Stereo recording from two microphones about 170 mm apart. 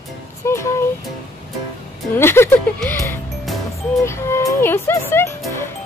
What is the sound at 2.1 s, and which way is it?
Speech, 15° left (ahead or behind).